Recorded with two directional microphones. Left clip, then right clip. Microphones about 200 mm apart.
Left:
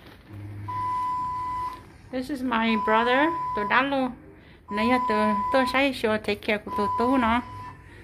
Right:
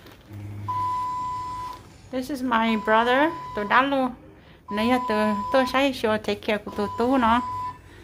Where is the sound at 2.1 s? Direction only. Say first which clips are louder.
Right 3 dB; 5° right (ahead or behind).